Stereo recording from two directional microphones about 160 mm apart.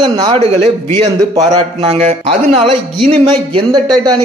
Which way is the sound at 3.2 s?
25° right (ahead or behind).